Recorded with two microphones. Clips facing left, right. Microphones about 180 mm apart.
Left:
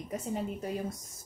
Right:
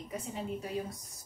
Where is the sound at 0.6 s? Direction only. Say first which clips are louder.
Left 2 dB; 45° left (ahead or behind).